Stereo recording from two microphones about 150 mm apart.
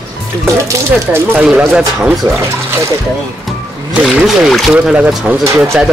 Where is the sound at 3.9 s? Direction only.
5° right (ahead or behind).